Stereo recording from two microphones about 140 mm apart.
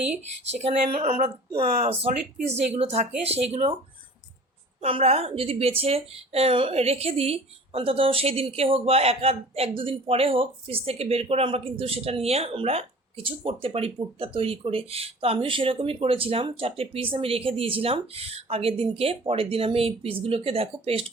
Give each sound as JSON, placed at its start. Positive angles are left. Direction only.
{"t": 0.5, "sound": "a woman's voice", "side_deg": -50}
{"t": 4.8, "sound": "a woman's voice", "side_deg": -45}